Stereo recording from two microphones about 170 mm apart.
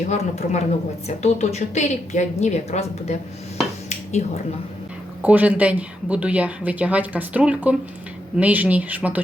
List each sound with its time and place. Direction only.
0.1 s a woman's voice: 45° left (ahead or behind)
4.2 s speech: 45° left (ahead or behind)
5.2 s speech: 10° right (ahead or behind)